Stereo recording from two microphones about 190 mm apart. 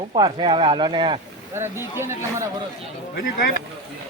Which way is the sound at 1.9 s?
15° right (ahead or behind).